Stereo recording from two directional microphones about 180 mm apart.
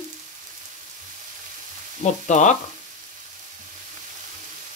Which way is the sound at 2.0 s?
40° left (ahead or behind).